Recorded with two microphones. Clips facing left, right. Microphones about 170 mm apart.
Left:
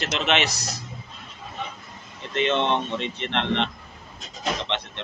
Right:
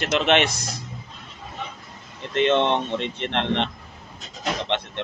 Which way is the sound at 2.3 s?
55° right (ahead or behind).